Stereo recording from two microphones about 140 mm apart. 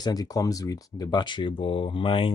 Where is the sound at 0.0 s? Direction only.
25° left (ahead or behind).